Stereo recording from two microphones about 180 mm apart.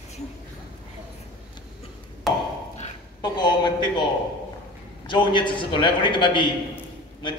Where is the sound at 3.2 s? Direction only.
25° left (ahead or behind).